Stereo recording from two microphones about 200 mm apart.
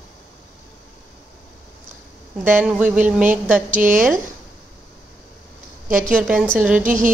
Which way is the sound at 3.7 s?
40° right (ahead or behind).